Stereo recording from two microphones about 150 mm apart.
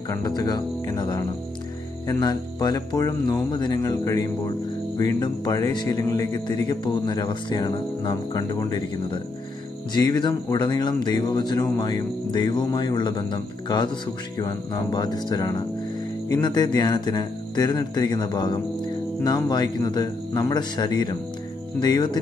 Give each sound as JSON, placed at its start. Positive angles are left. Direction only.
{"t": 0.1, "sound": "speech", "side_deg": 25}